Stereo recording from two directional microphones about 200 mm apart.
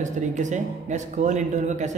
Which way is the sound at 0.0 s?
35° right (ahead or behind).